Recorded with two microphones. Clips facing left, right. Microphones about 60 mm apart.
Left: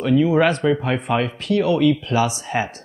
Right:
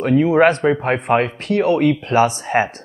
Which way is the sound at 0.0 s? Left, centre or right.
Right.